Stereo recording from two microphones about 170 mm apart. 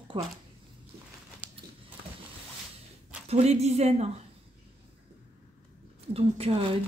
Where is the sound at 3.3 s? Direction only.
40° right (ahead or behind).